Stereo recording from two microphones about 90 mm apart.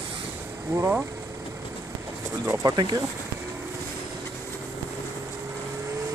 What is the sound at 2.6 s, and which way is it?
Speech, 50° right (ahead or behind).